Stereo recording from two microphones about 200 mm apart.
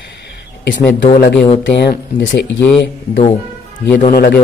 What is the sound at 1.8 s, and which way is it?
Speech, 55° left (ahead or behind).